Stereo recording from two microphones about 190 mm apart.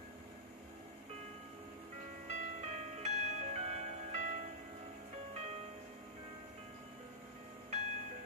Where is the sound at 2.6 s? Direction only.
35° right (ahead or behind).